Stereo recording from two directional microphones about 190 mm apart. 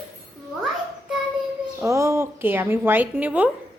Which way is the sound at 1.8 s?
15° right (ahead or behind).